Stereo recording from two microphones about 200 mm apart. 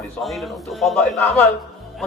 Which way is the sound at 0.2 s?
Centre (ahead or behind).